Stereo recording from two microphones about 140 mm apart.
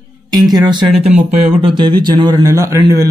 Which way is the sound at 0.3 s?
30° right (ahead or behind).